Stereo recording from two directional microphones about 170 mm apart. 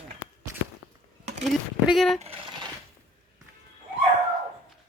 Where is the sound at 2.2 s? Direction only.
35° right (ahead or behind).